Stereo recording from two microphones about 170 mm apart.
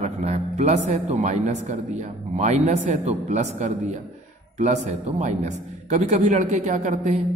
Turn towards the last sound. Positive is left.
turn(degrees=-45)  # may be behind; listen again after turning